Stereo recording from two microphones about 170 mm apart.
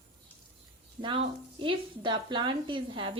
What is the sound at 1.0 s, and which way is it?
Speech, 30° right (ahead or behind).